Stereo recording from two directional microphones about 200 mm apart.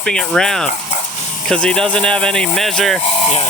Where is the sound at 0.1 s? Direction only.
Centre (ahead or behind).